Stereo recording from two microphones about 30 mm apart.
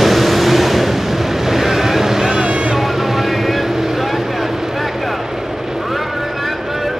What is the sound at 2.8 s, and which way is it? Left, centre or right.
Vehicle, centre.